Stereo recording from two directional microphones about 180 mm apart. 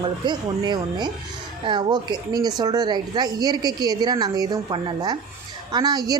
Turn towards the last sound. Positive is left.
turn(degrees=-20)  # may be behind; listen again after turning